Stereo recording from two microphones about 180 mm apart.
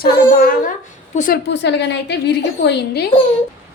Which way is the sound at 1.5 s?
75° left (ahead or behind).